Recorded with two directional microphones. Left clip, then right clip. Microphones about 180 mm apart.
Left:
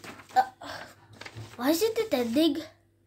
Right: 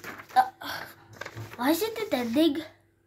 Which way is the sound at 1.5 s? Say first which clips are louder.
Left 1 dB; 10° left (ahead or behind).